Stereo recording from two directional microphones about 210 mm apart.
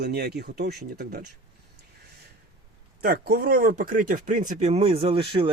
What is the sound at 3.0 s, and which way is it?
Speech, 45° right (ahead or behind).